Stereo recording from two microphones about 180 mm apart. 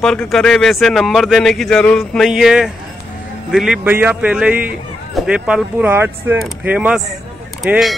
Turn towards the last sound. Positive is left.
turn(degrees=0)  # may be behind; listen again after turning